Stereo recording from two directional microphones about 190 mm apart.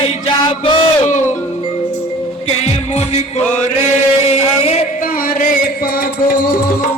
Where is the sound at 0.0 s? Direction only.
25° left (ahead or behind).